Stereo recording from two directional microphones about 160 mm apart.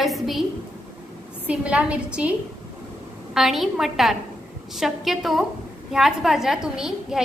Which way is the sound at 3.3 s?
Centre (ahead or behind).